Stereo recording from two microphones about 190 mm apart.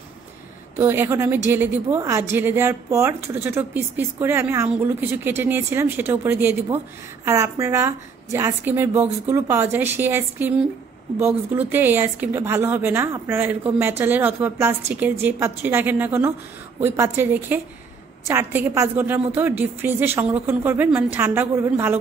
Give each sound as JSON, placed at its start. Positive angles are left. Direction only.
{"t": 0.7, "sound": "speech", "side_deg": -10}